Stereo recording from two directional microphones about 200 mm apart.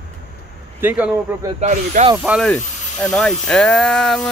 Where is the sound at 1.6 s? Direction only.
35° right (ahead or behind).